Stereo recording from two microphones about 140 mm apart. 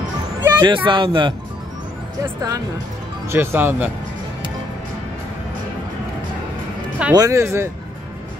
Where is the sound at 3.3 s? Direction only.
15° right (ahead or behind).